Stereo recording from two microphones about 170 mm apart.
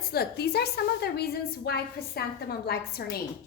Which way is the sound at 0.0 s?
65° left (ahead or behind).